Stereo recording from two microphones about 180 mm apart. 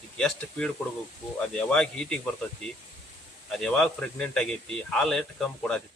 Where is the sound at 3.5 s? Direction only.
Centre (ahead or behind).